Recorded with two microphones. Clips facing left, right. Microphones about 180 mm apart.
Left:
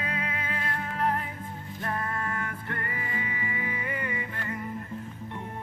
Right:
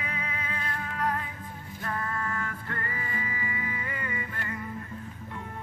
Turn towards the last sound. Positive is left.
turn(degrees=20)  # may be behind; listen again after turning